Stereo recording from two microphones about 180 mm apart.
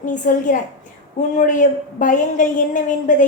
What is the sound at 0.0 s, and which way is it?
A woman's voice, 45° left (ahead or behind).